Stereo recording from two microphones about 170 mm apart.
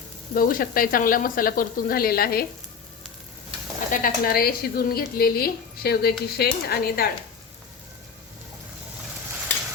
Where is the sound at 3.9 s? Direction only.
55° left (ahead or behind).